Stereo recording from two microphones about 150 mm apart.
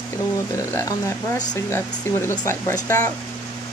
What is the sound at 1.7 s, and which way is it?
Speech, 15° left (ahead or behind).